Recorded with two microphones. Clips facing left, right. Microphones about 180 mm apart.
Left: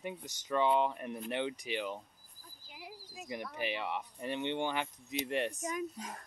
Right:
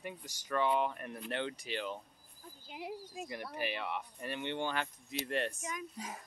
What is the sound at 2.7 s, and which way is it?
Speech, 25° right (ahead or behind).